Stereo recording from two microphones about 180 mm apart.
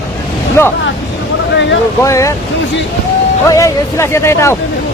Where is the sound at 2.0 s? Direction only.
15° left (ahead or behind).